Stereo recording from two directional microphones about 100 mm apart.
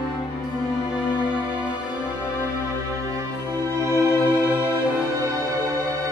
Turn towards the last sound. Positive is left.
turn(degrees=25)  # may be behind; listen again after turning